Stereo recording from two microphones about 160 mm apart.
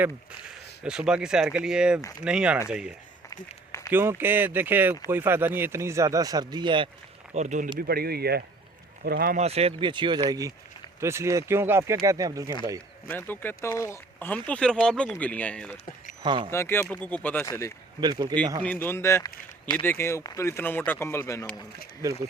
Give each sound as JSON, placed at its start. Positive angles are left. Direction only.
{"t": 0.9, "sound": "speech", "side_deg": -5}
{"t": 3.2, "sound": "a sound", "side_deg": 20}
{"t": 3.9, "sound": "a man's voice", "side_deg": -15}
{"t": 7.3, "sound": "speech", "side_deg": -50}
{"t": 7.8, "sound": "speech", "side_deg": -75}
{"t": 9.4, "sound": "a man's voice", "side_deg": -40}
{"t": 13.1, "sound": "speech", "side_deg": 10}
{"t": 16.2, "sound": "speech", "side_deg": -30}
{"t": 16.5, "sound": "speech", "side_deg": 15}
{"t": 18.0, "sound": "a man's voice", "side_deg": -25}
{"t": 18.6, "sound": "speech", "side_deg": 10}